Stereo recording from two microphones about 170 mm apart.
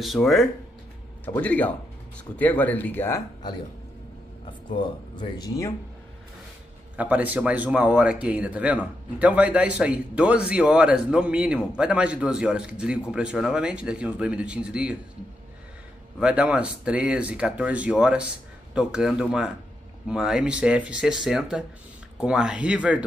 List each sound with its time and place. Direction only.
0.0 s speech: centre (ahead or behind)
4.7 s speech: 25° left (ahead or behind)
7.0 s speech: 10° right (ahead or behind)
16.2 s speech: 5° right (ahead or behind)